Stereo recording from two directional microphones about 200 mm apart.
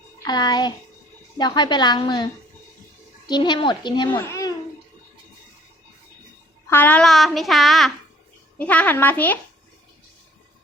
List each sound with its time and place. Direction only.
0.3 s a woman's voice: 20° left (ahead or behind)
4.2 s babbling: 15° left (ahead or behind)
6.7 s a child's voice: 10° left (ahead or behind)